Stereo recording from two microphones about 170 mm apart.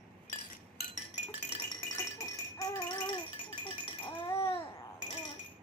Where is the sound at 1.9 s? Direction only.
20° left (ahead or behind).